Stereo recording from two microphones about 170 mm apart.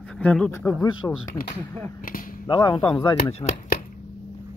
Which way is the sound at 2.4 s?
25° left (ahead or behind).